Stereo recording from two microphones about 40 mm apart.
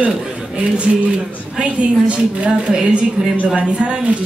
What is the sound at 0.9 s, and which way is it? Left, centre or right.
Speech, centre.